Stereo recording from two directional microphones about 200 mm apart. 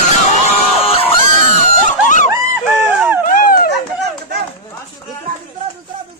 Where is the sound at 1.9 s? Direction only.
40° left (ahead or behind).